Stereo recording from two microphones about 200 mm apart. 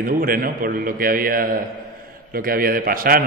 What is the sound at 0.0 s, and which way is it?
A man's voice, 45° right (ahead or behind).